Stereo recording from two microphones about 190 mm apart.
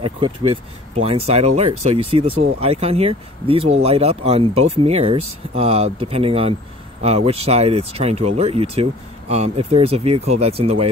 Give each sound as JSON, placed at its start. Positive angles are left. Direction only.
{"t": 0.0, "sound": "speech", "side_deg": -30}